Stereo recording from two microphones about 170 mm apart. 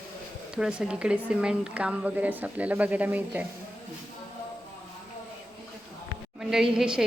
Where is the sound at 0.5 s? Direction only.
5° right (ahead or behind).